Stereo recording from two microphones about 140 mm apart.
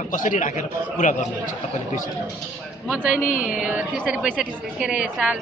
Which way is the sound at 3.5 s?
5° right (ahead or behind).